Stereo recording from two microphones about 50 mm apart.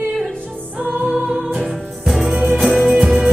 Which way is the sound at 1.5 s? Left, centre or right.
Centre.